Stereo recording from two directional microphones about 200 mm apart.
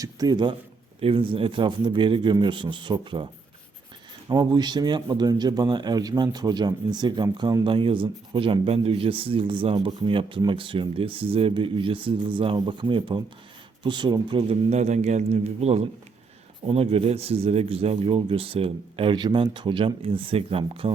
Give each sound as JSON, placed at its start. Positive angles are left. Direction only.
{"t": 0.0, "sound": "speech", "side_deg": -20}
{"t": 4.3, "sound": "a man's voice", "side_deg": -20}